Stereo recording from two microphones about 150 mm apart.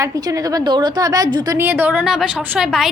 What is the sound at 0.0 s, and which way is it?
A woman's voice, 20° right (ahead or behind).